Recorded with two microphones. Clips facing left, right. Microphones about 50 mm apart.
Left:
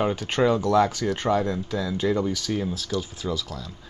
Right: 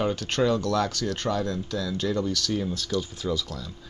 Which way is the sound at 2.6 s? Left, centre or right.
Centre.